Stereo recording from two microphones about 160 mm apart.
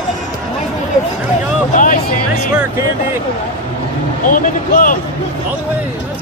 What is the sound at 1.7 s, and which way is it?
Speech, 55° left (ahead or behind).